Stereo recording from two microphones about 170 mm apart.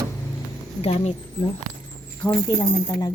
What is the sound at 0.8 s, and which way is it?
Speech, 35° left (ahead or behind).